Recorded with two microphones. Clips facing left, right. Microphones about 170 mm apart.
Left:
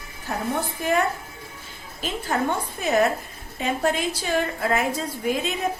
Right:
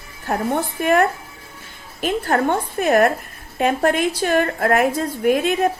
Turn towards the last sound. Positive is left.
turn(degrees=-60)  # may be behind; listen again after turning